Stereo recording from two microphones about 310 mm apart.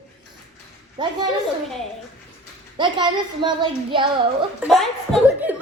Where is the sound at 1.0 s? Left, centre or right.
Centre.